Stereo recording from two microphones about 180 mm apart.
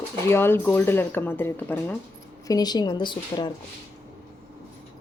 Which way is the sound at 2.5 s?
20° left (ahead or behind).